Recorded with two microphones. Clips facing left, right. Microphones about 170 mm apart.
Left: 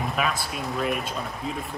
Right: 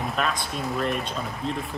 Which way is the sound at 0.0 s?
Centre (ahead or behind).